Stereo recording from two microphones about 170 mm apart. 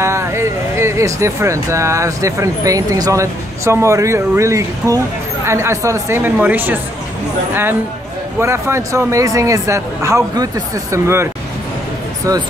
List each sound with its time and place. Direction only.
0.0 s speech: 15° right (ahead or behind)
8.4 s speech: 15° right (ahead or behind)
12.3 s speech: 20° right (ahead or behind)